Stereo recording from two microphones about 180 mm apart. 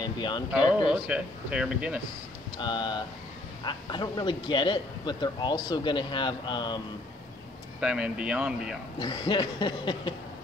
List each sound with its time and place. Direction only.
0.0 s a sound: 25° left (ahead or behind)
0.5 s speech: 5° right (ahead or behind)
2.6 s speech: 25° left (ahead or behind)
7.8 s speech: 5° right (ahead or behind)
9.0 s speech: 25° left (ahead or behind)